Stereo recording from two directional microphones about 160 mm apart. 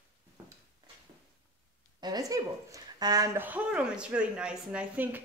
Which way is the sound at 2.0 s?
25° right (ahead or behind).